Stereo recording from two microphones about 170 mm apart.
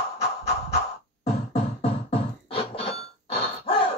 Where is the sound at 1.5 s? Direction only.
35° left (ahead or behind).